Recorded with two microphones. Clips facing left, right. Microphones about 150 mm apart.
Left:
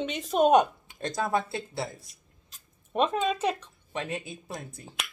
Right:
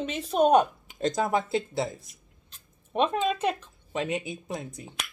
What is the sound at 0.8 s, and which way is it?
Speech, 20° right (ahead or behind).